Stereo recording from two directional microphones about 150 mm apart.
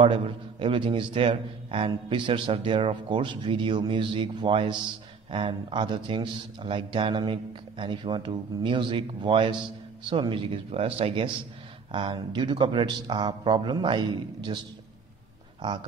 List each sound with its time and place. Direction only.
0.0 s a man's voice: 35° right (ahead or behind)